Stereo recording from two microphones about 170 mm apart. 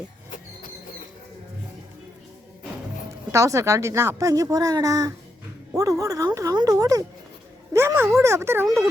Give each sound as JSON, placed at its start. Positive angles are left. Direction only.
{"t": 3.3, "sound": "speech", "side_deg": -20}